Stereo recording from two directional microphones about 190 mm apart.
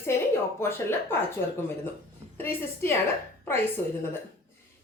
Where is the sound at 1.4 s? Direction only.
65° left (ahead or behind).